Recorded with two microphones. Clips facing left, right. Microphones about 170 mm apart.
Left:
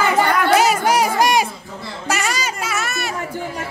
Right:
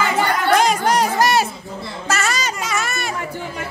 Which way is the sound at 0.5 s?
5° left (ahead or behind).